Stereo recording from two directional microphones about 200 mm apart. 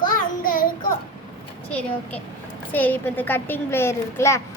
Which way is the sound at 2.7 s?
10° left (ahead or behind).